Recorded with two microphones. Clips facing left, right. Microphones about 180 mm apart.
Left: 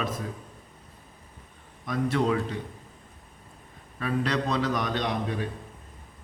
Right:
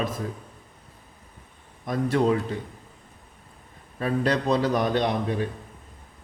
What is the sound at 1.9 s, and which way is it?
Speech, 40° right (ahead or behind).